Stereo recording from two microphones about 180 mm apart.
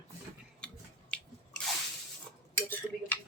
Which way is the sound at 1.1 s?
5° left (ahead or behind).